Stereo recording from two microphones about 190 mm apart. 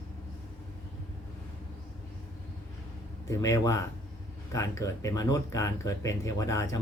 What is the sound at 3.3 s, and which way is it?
Speech, 15° left (ahead or behind).